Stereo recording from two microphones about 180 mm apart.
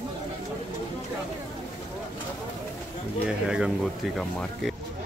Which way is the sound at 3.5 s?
5° right (ahead or behind).